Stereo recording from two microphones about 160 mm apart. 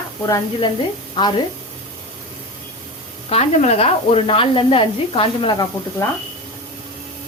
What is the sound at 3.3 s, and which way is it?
Speech, 40° left (ahead or behind).